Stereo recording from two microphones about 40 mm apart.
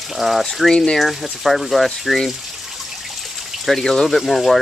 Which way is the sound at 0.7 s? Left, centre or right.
Centre.